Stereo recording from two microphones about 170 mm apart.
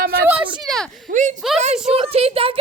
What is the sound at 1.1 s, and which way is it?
Speech, 45° right (ahead or behind).